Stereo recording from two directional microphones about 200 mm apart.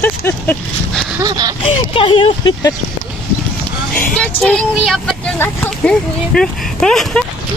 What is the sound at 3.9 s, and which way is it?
Speech, 10° left (ahead or behind).